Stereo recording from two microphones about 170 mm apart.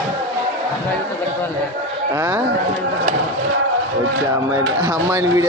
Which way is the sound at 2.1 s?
15° right (ahead or behind).